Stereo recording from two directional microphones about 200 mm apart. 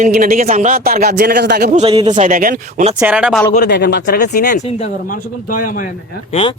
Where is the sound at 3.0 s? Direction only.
5° right (ahead or behind).